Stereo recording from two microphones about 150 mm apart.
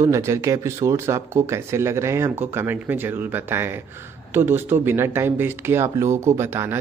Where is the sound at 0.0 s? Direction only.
20° right (ahead or behind).